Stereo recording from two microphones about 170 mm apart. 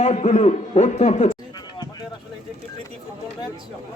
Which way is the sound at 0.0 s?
40° left (ahead or behind).